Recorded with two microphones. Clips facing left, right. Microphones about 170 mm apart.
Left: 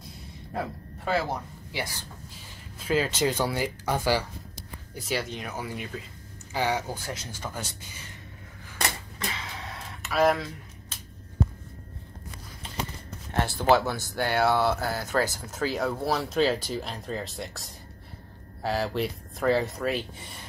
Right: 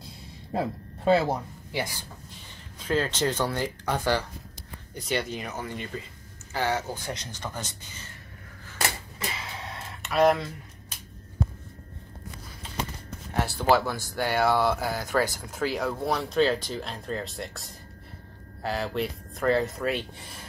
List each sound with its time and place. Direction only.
0.5 s speech: 25° right (ahead or behind)
2.8 s speech: 10° left (ahead or behind)
9.3 s a sound: centre (ahead or behind)
13.6 s speech: centre (ahead or behind)